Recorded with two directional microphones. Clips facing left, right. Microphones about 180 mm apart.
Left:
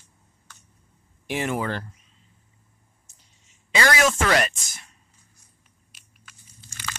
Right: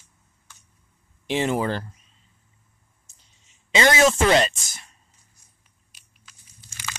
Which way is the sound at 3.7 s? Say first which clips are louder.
Right 3 dB; 20° right (ahead or behind).